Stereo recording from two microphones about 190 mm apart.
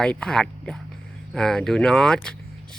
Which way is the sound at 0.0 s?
5° left (ahead or behind).